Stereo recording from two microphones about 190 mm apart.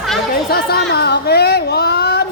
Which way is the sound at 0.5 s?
55° left (ahead or behind).